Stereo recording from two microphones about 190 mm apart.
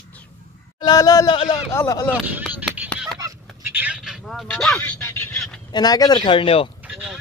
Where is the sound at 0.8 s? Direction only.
20° left (ahead or behind).